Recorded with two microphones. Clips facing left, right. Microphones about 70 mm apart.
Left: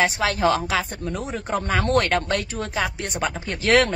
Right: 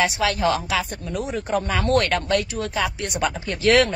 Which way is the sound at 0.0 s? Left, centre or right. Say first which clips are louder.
Even; left.